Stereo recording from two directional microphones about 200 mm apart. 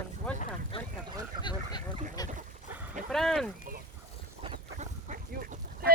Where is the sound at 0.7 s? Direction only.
25° left (ahead or behind).